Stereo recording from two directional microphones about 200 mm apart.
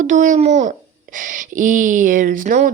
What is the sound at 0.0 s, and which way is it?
A woman's voice, 40° right (ahead or behind).